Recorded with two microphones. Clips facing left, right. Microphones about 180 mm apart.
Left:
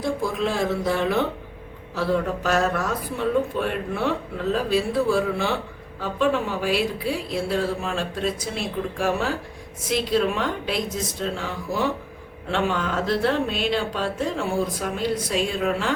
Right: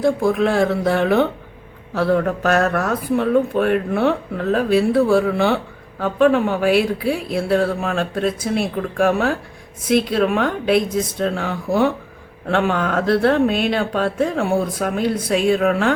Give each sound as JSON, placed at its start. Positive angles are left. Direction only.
{"t": 0.0, "sound": "speech", "side_deg": -55}